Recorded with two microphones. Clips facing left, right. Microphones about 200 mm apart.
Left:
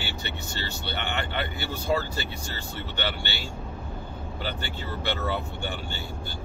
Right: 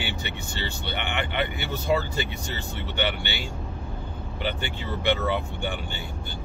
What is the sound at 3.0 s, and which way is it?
Speech, 15° right (ahead or behind).